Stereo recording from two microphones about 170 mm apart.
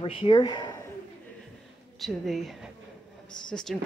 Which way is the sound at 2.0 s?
Centre (ahead or behind).